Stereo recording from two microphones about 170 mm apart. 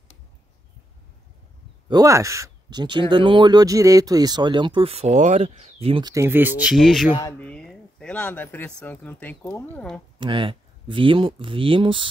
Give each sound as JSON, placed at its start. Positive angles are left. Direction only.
{"t": 1.9, "sound": "speech", "side_deg": -20}
{"t": 6.1, "sound": "speech", "side_deg": -15}
{"t": 7.2, "sound": "speech", "side_deg": 20}
{"t": 7.4, "sound": "speech", "side_deg": 5}
{"t": 10.1, "sound": "speech", "side_deg": -30}